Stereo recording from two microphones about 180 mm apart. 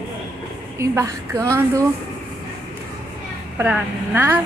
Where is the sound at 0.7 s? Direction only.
15° right (ahead or behind).